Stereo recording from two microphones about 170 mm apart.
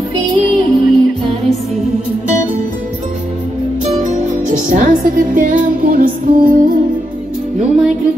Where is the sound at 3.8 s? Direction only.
45° right (ahead or behind).